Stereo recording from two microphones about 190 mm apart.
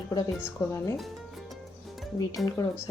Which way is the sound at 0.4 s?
15° left (ahead or behind).